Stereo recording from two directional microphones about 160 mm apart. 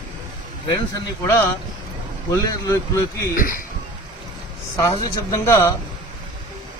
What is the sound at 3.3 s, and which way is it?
Speech, 60° left (ahead or behind).